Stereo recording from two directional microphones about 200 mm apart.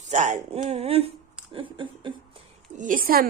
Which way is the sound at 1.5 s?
25° right (ahead or behind).